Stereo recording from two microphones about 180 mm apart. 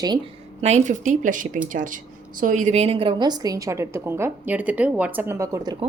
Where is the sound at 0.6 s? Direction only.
40° right (ahead or behind); by 5.8 s 20° right (ahead or behind).